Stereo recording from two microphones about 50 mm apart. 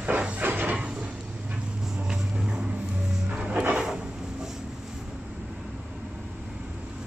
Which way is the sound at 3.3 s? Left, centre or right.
Centre.